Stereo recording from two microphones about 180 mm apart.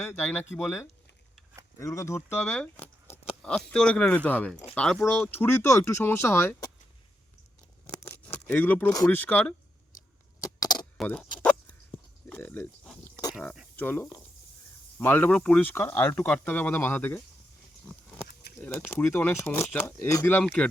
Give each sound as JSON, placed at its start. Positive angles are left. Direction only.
{"t": 0.1, "sound": "speech", "side_deg": 5}
{"t": 1.8, "sound": "speech", "side_deg": 15}
{"t": 8.0, "sound": "speech", "side_deg": 10}
{"t": 10.4, "sound": "keys jangling", "side_deg": 20}
{"t": 10.9, "sound": "a sound", "side_deg": 0}
{"t": 13.7, "sound": "speech", "side_deg": 10}
{"t": 18.6, "sound": "speech", "side_deg": 10}